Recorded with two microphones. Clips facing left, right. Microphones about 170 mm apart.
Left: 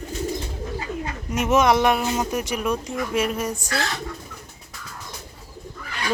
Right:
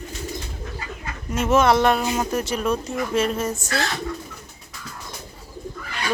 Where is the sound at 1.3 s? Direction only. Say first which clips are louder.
Right 1 dB; 15° left (ahead or behind).